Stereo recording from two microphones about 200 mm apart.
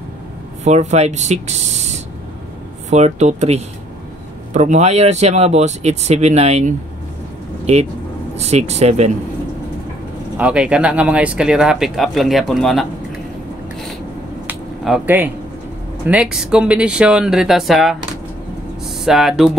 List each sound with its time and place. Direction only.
0.7 s speech: 35° right (ahead or behind)
10.3 s speech: 5° right (ahead or behind)
14.5 s a sound: 10° right (ahead or behind)
16.1 s speech: 5° right (ahead or behind)
19.0 s speech: centre (ahead or behind)